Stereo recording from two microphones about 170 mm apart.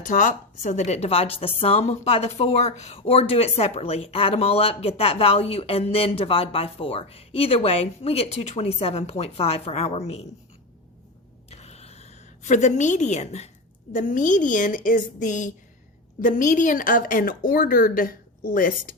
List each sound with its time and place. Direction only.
0.0 s speech: 50° left (ahead or behind)
11.5 s a sound: 40° left (ahead or behind)
13.9 s a woman's voice: 50° left (ahead or behind)